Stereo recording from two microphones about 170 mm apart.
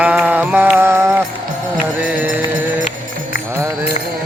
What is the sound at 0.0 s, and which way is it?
Music, 10° right (ahead or behind).